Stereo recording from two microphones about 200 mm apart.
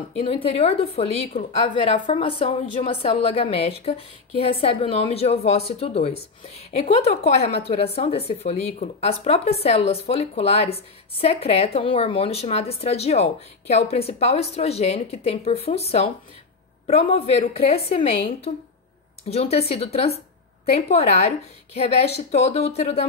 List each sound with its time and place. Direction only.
0.2 s a woman's voice: 30° left (ahead or behind)